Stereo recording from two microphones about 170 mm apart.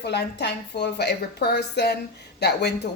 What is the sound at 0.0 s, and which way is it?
Speech, 80° left.